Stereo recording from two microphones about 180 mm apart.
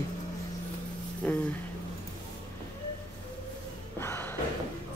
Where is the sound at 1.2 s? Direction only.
5° left (ahead or behind).